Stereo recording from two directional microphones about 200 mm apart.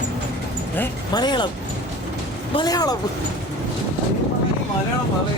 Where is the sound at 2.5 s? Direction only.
20° left (ahead or behind).